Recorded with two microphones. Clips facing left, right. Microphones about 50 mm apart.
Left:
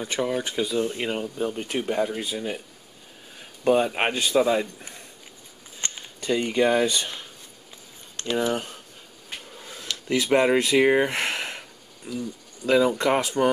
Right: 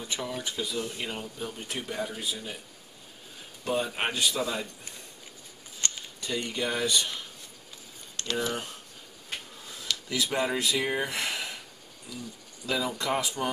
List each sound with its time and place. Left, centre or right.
0.0 s a man's voice: left
3.6 s a man's voice: left
5.8 s a sound: centre
6.2 s a man's voice: left
10.0 s a man's voice: left